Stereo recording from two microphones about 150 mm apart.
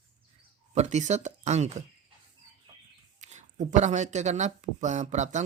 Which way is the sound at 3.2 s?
50° right (ahead or behind).